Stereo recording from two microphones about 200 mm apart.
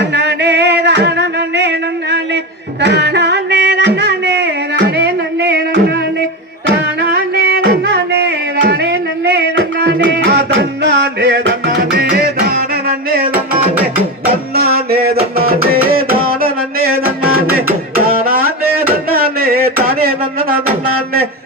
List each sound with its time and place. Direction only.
0.0 s music: 55° right (ahead or behind)
7.4 s music: 60° right (ahead or behind)
19.1 s a sound: 50° right (ahead or behind)